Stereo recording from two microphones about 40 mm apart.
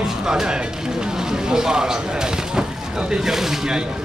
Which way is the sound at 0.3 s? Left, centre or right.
Centre.